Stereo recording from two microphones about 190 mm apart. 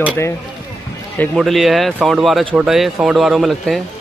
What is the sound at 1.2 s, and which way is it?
Speech, centre (ahead or behind).